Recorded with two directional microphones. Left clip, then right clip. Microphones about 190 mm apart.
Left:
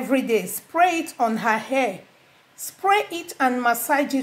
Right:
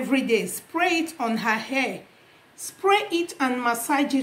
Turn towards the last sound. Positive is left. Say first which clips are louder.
# left 3 dB
turn(degrees=25)  # may be behind; listen again after turning